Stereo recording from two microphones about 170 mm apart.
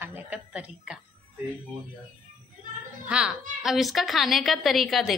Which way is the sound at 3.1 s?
5° right (ahead or behind).